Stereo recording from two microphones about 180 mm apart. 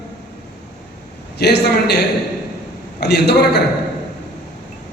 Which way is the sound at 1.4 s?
65° left (ahead or behind).